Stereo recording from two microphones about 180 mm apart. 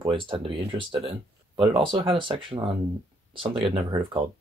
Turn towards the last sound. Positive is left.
turn(degrees=-30)  # may be behind; listen again after turning